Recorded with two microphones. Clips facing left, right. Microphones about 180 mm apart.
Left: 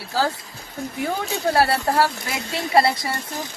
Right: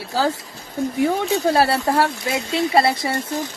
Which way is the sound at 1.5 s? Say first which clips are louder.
Left 2 dB; 25° right (ahead or behind).